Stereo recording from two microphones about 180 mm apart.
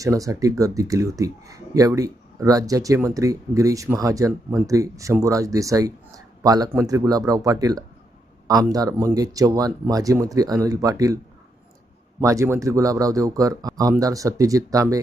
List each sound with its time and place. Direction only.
0.0 s speech: 20° right (ahead or behind)
12.2 s speech: 15° right (ahead or behind)